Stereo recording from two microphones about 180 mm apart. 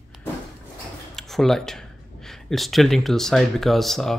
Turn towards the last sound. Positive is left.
turn(degrees=0)  # may be behind; listen again after turning